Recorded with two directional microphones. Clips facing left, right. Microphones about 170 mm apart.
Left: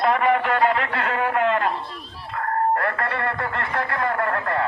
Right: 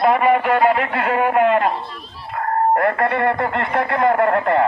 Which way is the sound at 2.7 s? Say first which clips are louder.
Right 6 dB; 20° right (ahead or behind).